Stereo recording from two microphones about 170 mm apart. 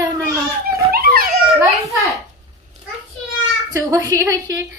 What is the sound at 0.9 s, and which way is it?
Dog, 60° right (ahead or behind).